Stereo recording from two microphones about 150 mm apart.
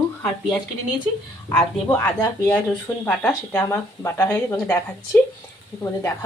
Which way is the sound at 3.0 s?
10° left (ahead or behind).